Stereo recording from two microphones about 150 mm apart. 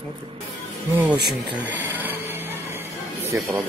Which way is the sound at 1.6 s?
10° right (ahead or behind).